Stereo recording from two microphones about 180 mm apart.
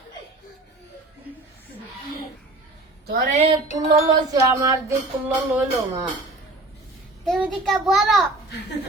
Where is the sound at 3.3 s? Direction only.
35° right (ahead or behind).